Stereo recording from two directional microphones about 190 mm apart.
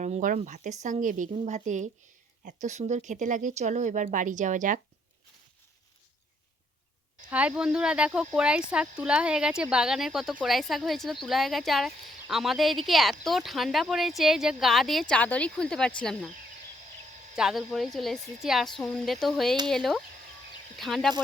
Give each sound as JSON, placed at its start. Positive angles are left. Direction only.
{"t": 0.0, "sound": "speech", "side_deg": -40}
{"t": 7.3, "sound": "speech", "side_deg": -5}
{"t": 17.3, "sound": "speech", "side_deg": 0}